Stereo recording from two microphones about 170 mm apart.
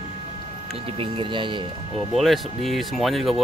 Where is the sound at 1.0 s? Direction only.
30° right (ahead or behind).